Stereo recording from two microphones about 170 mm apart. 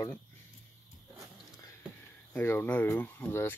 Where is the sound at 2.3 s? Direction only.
10° left (ahead or behind).